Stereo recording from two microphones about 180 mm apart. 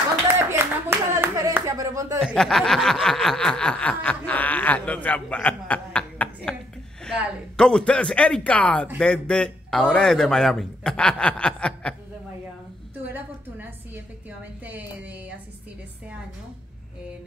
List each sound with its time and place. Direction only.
0.3 s clapping: 15° right (ahead or behind)
2.2 s snicker: centre (ahead or behind)
7.5 s a man's voice: 5° left (ahead or behind)